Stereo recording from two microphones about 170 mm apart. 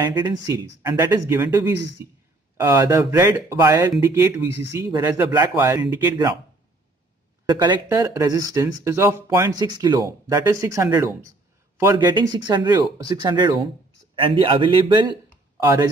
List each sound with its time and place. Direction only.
0.1 s a man's voice: 25° right (ahead or behind)
7.4 s speech: 25° right (ahead or behind)